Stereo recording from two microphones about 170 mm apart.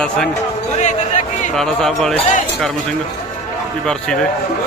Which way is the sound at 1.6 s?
Centre (ahead or behind).